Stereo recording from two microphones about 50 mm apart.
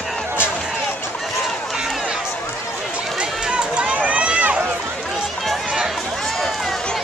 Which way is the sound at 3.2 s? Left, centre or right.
Right.